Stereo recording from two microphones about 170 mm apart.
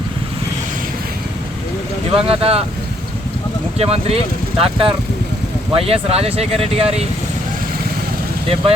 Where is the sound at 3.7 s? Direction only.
35° right (ahead or behind).